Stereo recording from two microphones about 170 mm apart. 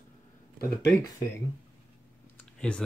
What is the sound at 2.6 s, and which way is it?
Speech, 5° left (ahead or behind).